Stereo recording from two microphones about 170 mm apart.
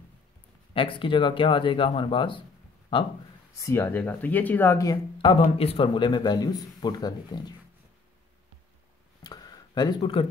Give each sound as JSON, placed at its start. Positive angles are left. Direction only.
{"t": 0.7, "sound": "a man's voice", "side_deg": 30}
{"t": 3.5, "sound": "speech", "side_deg": 15}
{"t": 5.2, "sound": "a man's voice", "side_deg": 35}
{"t": 9.2, "sound": "a sound", "side_deg": 25}